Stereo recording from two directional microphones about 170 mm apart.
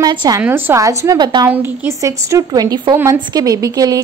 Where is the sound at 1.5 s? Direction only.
10° right (ahead or behind).